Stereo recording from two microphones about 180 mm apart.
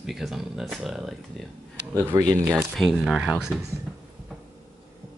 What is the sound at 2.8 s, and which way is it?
Speech, centre (ahead or behind).